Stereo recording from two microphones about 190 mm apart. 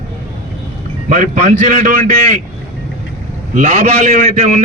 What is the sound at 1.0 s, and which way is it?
A man's voice, 40° right (ahead or behind).